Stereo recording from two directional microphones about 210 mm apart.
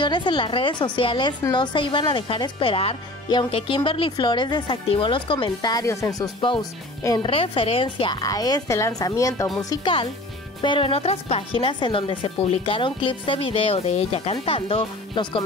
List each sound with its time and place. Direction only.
0.0 s a woman's voice: 20° left (ahead or behind)